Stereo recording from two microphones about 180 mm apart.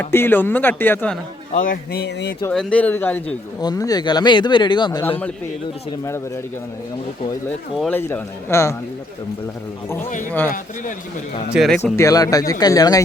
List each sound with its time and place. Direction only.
0.0 s speech: 10° left (ahead or behind)
1.5 s speech: 50° left (ahead or behind); by 2.3 s 70° left (ahead or behind)
2.5 s speech: 5° left (ahead or behind)
3.6 s speech: 20° left (ahead or behind)
7.8 s speech: 10° left (ahead or behind)
11.5 s speech: centre (ahead or behind)
11.9 s speech: 20° left (ahead or behind)